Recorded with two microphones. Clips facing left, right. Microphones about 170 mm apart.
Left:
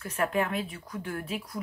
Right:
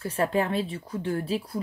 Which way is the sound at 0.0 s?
30° right (ahead or behind).